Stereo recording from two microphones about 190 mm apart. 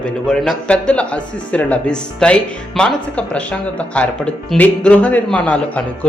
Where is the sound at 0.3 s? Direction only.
5° left (ahead or behind).